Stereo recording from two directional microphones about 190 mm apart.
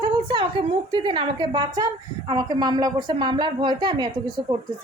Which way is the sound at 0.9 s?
25° right (ahead or behind).